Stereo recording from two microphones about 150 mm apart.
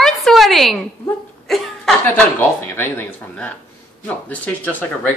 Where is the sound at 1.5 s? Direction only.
5° left (ahead or behind).